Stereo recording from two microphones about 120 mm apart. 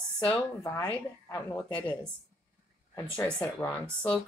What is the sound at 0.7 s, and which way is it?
Speech, 30° left (ahead or behind).